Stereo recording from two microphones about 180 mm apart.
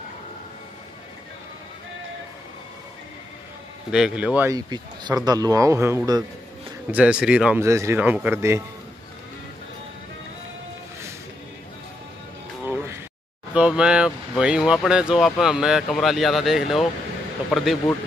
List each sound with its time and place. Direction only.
3.9 s speech: 5° right (ahead or behind)
4.6 s a man's voice: 25° right (ahead or behind)
12.6 s a sound: 10° right (ahead or behind)
13.6 s speech: 5° right (ahead or behind)